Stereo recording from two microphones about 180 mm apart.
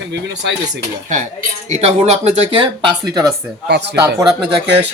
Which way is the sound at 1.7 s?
35° right (ahead or behind).